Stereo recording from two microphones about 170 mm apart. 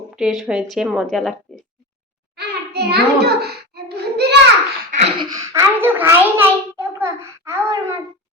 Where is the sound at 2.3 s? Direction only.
70° right (ahead or behind).